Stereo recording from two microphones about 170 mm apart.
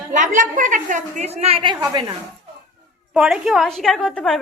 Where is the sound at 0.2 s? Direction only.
50° right (ahead or behind); by 2.1 s 25° right (ahead or behind).